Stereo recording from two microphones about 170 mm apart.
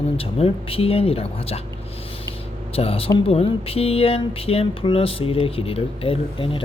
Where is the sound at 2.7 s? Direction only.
35° left (ahead or behind).